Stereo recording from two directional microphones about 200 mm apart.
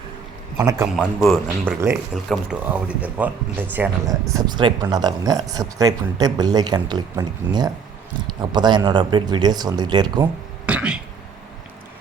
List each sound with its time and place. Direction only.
0.6 s speech: 15° right (ahead or behind)
0.9 s speech: centre (ahead or behind); by 10.2 s 20° right (ahead or behind)
10.7 s speech: 5° right (ahead or behind)